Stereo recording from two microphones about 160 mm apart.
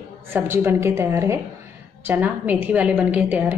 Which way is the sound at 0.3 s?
15° right (ahead or behind).